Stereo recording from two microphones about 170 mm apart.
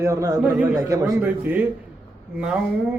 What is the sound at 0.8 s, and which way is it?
Speech, 20° right (ahead or behind).